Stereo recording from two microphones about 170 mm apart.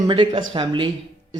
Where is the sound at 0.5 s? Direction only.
30° right (ahead or behind).